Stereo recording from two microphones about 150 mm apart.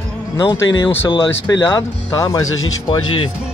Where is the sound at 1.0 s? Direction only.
30° left (ahead or behind).